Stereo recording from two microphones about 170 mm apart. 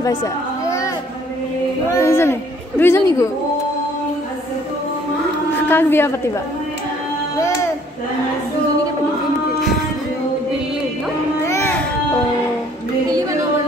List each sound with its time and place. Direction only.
0.0 s a sound: 20° left (ahead or behind)
2.0 s a woman's voice: 15° left (ahead or behind)
5.7 s a woman's voice: 15° left (ahead or behind)
11.4 s children playing: 15° left (ahead or behind)
13.1 s music: 20° right (ahead or behind)